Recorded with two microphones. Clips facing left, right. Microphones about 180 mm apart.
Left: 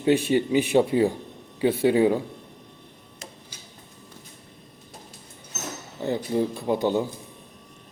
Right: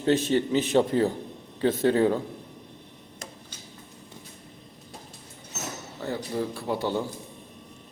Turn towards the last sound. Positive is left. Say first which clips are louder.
# left 4 dB
turn(degrees=20)  # may be behind; listen again after turning